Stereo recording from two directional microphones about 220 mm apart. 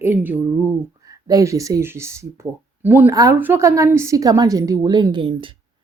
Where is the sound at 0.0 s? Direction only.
10° right (ahead or behind).